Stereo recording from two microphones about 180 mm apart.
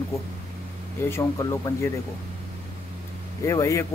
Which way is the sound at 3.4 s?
15° left (ahead or behind).